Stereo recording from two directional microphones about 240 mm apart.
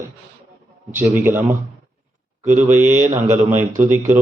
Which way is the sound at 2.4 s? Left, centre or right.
Right.